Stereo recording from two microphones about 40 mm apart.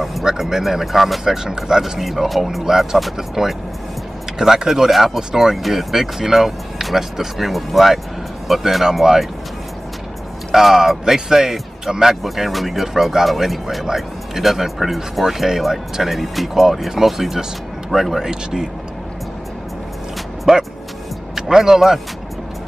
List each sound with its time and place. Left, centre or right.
0.2 s speech: centre
4.6 s speech: centre
10.5 s speech: centre
18.3 s speech: centre
20.5 s speech: centre